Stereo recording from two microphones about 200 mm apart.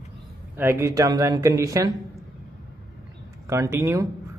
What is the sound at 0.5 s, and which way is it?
Speech, 10° right (ahead or behind).